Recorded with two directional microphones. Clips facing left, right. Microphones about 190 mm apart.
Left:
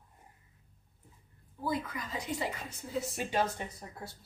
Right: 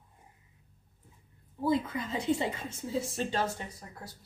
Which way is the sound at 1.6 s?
25° right (ahead or behind).